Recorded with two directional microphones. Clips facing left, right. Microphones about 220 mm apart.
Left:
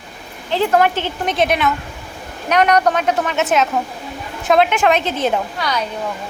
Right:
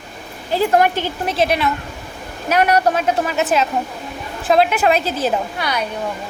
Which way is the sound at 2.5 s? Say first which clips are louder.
Left 1 dB; 10° right (ahead or behind).